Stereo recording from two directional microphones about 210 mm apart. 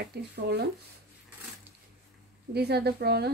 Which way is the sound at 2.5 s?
50° right (ahead or behind).